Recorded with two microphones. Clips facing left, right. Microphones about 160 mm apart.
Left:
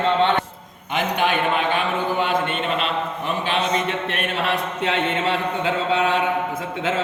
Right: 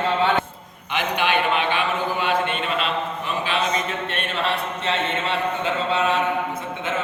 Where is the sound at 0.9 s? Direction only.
40° left (ahead or behind).